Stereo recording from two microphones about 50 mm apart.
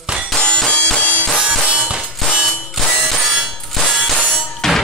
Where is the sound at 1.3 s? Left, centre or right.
Centre.